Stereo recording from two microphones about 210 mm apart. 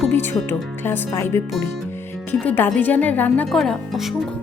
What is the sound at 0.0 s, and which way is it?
Speech, 10° left (ahead or behind).